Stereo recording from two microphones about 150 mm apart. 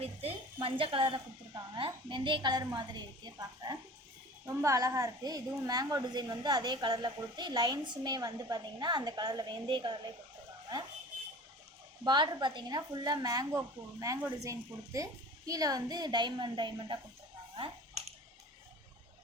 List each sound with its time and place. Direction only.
0.0 s a sound: 40° right (ahead or behind)
1.7 s speech: 30° right (ahead or behind)
12.0 s speech: 30° right (ahead or behind)